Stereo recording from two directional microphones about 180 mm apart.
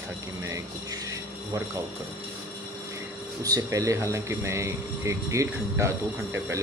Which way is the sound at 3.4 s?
20° right (ahead or behind).